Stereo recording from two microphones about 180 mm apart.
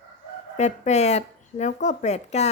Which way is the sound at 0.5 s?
40° left (ahead or behind).